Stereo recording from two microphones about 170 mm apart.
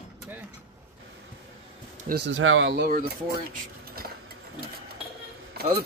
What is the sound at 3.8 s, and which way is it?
Dishes, 65° right (ahead or behind).